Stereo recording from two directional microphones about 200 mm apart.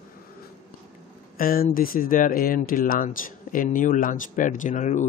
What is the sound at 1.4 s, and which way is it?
Speech, 45° left (ahead or behind).